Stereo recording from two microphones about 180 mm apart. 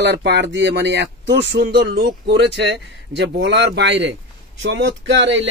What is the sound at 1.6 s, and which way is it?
Speech, 55° right (ahead or behind).